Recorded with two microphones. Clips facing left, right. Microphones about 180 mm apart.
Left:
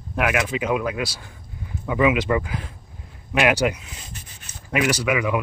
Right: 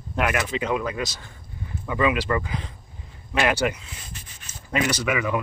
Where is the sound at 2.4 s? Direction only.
5° left (ahead or behind).